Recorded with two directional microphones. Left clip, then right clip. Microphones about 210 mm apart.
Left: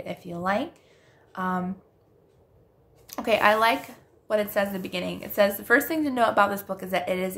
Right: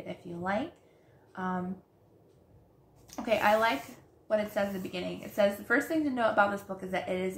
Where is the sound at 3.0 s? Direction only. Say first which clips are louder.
Left 6 dB; 50° left (ahead or behind).